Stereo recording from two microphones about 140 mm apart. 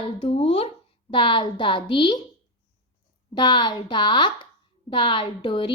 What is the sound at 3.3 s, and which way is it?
A woman's voice, 35° left (ahead or behind).